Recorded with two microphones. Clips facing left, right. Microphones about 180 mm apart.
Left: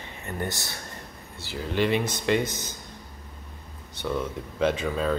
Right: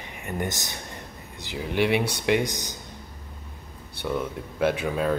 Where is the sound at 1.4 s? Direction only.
15° right (ahead or behind).